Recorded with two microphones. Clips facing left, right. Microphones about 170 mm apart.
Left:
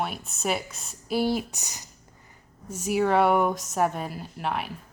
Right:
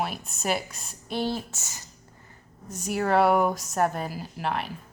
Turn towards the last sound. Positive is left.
turn(degrees=0)  # may be behind; listen again after turning